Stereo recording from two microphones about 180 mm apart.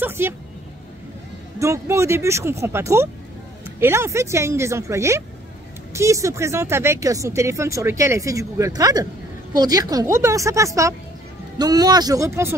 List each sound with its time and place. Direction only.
0.0 s speech: 15° right (ahead or behind)
1.6 s speech: 15° right (ahead or behind)